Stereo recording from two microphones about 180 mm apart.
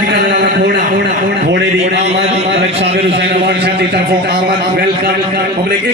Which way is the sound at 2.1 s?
35° right (ahead or behind).